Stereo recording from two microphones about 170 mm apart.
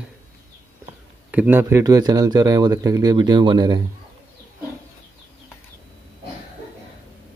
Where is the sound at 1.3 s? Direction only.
10° right (ahead or behind).